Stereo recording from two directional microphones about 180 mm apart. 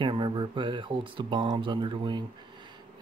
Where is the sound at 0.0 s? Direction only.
25° right (ahead or behind).